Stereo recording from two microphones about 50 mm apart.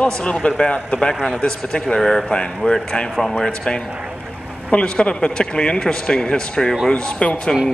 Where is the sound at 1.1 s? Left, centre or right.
Centre.